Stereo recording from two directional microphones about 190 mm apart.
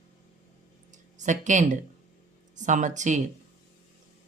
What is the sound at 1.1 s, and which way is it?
Speech, 40° right (ahead or behind).